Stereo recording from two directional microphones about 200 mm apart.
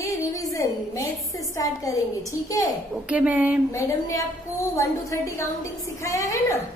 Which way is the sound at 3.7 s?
15° left (ahead or behind).